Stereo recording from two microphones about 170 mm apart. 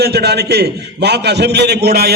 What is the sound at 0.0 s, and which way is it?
A man's voice, 75° right (ahead or behind).